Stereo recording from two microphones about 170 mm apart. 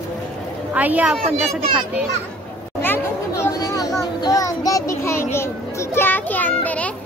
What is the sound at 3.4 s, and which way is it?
Children playing, 20° left (ahead or behind).